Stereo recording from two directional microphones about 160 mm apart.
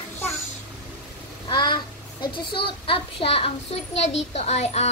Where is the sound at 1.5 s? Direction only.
25° left (ahead or behind).